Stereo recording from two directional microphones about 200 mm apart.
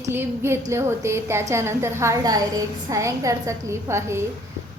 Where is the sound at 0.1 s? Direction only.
10° right (ahead or behind).